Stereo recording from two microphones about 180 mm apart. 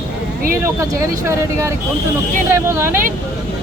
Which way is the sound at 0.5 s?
15° right (ahead or behind).